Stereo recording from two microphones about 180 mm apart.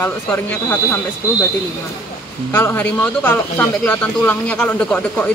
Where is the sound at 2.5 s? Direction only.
10° left (ahead or behind).